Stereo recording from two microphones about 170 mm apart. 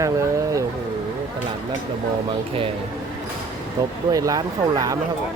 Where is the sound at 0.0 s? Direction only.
20° right (ahead or behind).